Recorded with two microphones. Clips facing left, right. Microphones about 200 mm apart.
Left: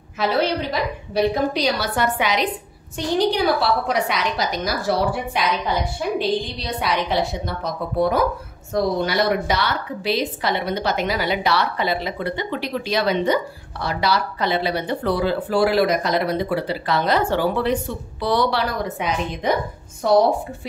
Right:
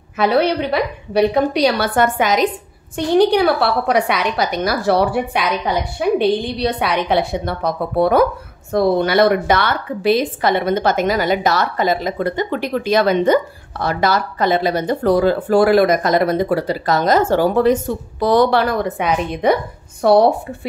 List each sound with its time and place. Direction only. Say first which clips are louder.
0.2 s a woman's voice: right 5 dB; 60° right (ahead or behind); by 2.5 s 45° right (ahead or behind)
3.2 s a woman's voice: right 6 dB; 60° right (ahead or behind)